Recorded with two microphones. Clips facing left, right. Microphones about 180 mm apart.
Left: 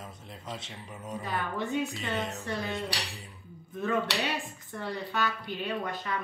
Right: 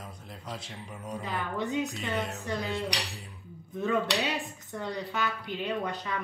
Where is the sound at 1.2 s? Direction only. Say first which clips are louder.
Even; 15° right (ahead or behind).